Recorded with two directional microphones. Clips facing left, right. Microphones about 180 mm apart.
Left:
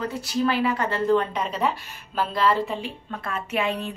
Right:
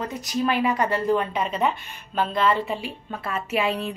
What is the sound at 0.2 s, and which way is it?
A woman's voice, 15° right (ahead or behind).